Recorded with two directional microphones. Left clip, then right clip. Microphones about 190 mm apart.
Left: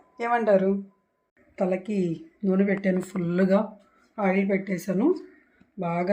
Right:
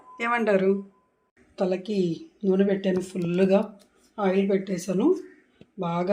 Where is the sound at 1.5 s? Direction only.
10° left (ahead or behind).